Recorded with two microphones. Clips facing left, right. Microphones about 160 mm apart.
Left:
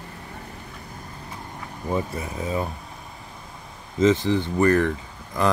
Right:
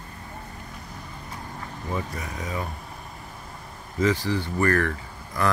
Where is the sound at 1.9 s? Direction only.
25° left (ahead or behind).